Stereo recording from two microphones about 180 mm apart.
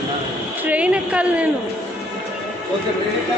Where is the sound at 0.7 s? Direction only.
5° right (ahead or behind).